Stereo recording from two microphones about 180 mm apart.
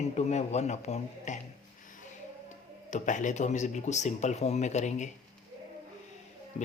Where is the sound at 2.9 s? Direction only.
45° left (ahead or behind).